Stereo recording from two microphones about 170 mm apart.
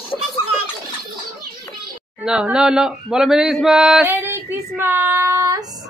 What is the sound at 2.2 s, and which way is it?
Speech, 5° right (ahead or behind).